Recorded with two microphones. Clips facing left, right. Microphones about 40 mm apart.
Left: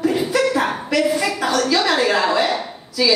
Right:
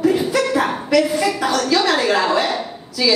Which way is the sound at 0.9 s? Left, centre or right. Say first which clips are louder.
Right 2 dB; left.